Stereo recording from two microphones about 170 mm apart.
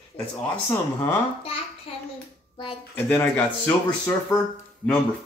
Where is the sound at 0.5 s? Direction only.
10° left (ahead or behind).